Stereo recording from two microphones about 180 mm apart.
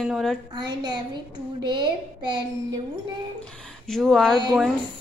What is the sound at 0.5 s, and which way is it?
A woman's voice, 25° right (ahead or behind).